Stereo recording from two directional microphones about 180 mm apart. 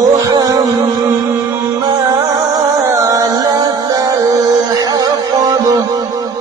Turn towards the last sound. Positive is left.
turn(degrees=-20)  # may be behind; listen again after turning